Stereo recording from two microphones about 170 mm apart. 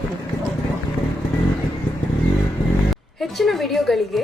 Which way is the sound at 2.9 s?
Centre (ahead or behind).